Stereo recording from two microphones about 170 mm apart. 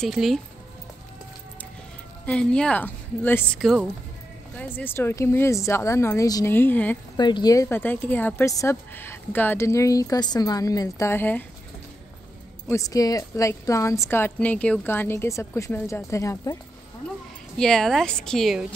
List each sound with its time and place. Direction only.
0.0 s speech: centre (ahead or behind)
2.2 s speech: 5° left (ahead or behind)
3.5 s speech: centre (ahead or behind)
7.2 s speech: 25° left (ahead or behind)
12.6 s speech: 20° left (ahead or behind)
17.6 s speech: 5° left (ahead or behind)